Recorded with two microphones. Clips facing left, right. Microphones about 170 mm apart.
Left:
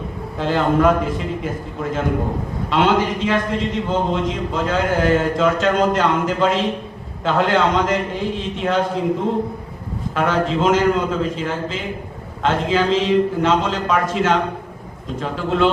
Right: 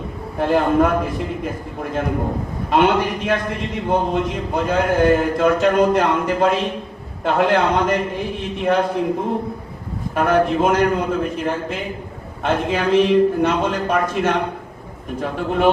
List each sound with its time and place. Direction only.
0.3 s a man's voice: 90° left